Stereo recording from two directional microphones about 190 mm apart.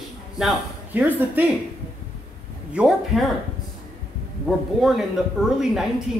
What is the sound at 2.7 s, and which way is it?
Speech, 5° right (ahead or behind).